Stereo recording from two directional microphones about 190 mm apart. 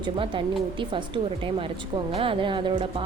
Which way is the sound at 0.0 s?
25° right (ahead or behind).